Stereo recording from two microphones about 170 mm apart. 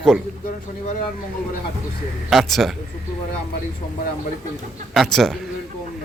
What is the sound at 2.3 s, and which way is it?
Speech, centre (ahead or behind).